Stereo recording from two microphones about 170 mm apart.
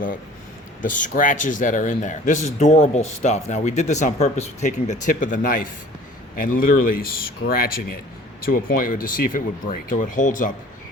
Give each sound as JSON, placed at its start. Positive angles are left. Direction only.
{"t": 0.8, "sound": "a man's voice", "side_deg": 50}